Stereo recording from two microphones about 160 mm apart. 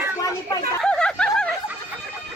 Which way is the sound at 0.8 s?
5° left (ahead or behind).